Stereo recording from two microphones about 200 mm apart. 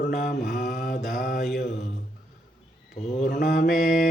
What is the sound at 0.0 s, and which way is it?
Mantra, 45° left (ahead or behind).